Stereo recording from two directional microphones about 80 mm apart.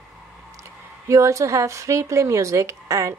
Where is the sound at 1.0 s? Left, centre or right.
Right.